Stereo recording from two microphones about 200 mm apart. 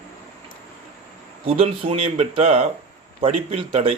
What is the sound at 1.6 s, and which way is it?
A man's voice, 30° right (ahead or behind).